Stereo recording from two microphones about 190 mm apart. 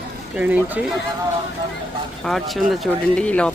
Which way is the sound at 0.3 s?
10° right (ahead or behind).